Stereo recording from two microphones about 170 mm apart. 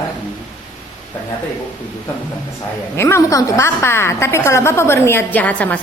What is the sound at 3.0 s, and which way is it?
A woman's voice, 15° left (ahead or behind).